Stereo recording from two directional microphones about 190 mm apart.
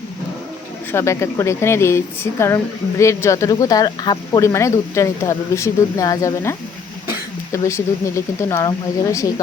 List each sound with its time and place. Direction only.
0.9 s speech: 15° left (ahead or behind)